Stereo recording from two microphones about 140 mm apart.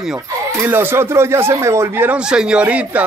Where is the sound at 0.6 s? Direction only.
15° right (ahead or behind).